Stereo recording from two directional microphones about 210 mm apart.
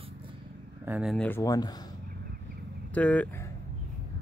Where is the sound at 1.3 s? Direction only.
15° left (ahead or behind).